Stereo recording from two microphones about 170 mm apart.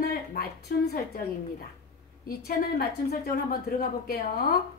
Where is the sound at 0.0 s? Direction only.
60° left (ahead or behind).